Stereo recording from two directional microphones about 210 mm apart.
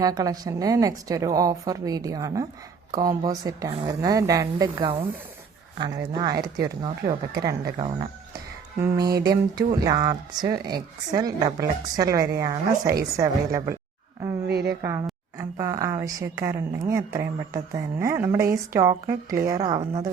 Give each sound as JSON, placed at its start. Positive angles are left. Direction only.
{"t": 0.0, "sound": "a woman's voice", "side_deg": -15}
{"t": 14.5, "sound": "speech", "side_deg": -50}
{"t": 14.8, "sound": "a woman's voice", "side_deg": -15}